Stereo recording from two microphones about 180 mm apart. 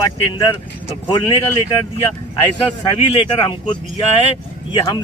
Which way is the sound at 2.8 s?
25° left (ahead or behind).